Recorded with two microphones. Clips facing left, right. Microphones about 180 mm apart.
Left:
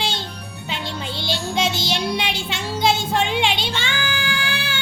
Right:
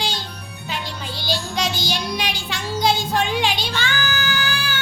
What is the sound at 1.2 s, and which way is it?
Music, 25° left (ahead or behind).